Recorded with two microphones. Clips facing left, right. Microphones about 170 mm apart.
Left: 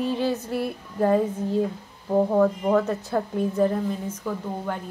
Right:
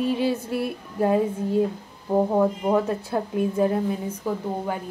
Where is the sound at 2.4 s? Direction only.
15° right (ahead or behind).